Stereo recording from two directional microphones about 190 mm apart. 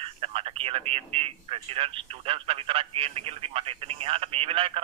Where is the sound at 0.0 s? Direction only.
30° right (ahead or behind).